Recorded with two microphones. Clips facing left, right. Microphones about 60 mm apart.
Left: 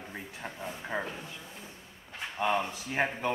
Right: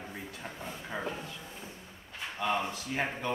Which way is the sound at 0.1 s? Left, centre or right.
Centre.